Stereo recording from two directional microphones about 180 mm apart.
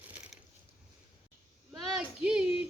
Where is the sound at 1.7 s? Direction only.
Centre (ahead or behind).